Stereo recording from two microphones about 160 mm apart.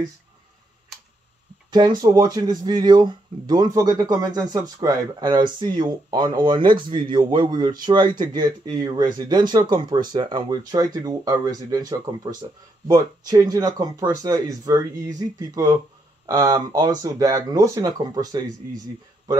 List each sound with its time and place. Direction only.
1.7 s speech: 25° right (ahead or behind)